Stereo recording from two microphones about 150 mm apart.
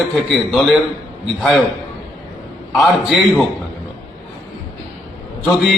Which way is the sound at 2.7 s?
Centre (ahead or behind).